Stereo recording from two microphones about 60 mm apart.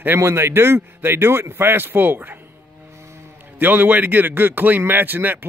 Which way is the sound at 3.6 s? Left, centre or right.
Right.